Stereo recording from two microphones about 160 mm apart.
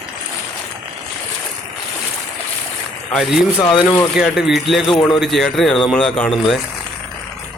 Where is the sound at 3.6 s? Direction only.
30° left (ahead or behind).